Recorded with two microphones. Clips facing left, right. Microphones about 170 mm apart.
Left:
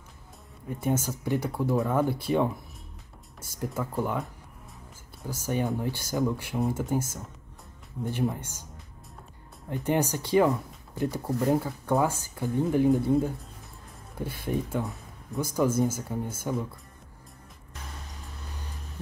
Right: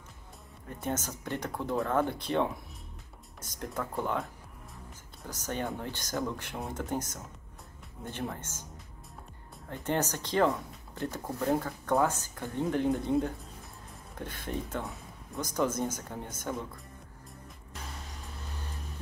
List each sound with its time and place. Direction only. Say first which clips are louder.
0.7 s speech: left 6 dB; 10° left (ahead or behind)
9.7 s speech: left 5 dB; 10° left (ahead or behind)